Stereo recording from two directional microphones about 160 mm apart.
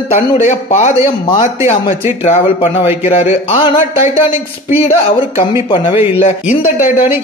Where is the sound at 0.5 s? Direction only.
45° left (ahead or behind).